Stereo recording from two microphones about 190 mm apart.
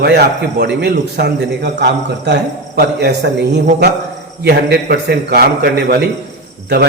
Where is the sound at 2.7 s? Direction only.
60° right (ahead or behind).